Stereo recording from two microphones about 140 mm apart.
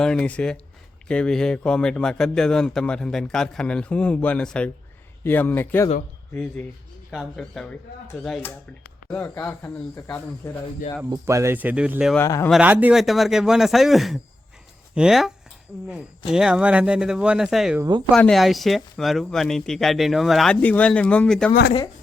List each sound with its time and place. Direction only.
0.0 s speech: 5° left (ahead or behind)
7.1 s speech: centre (ahead or behind)
9.1 s speech: 10° left (ahead or behind)
11.1 s speech: 20° right (ahead or behind)
12.1 s speech: 20° left (ahead or behind)
12.5 s speech: 10° right (ahead or behind)
13.0 s speech: centre (ahead or behind)
16.3 s speech: 5° right (ahead or behind)